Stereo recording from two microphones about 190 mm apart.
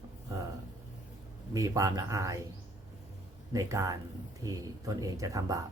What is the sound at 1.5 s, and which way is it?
Speech, 15° right (ahead or behind).